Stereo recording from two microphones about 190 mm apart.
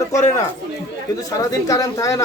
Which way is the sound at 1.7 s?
15° left (ahead or behind).